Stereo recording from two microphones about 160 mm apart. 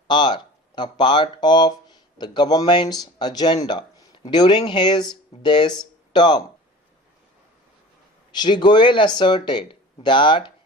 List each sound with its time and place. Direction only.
0.1 s a man's voice: 30° left (ahead or behind)
8.4 s a man's voice: 25° left (ahead or behind)